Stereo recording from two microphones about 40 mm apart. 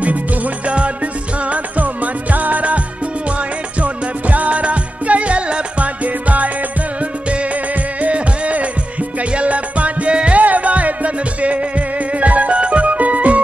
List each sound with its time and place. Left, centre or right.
0.7 s music: right
2.3 s music: right
3.8 s music: right
8.0 s music: right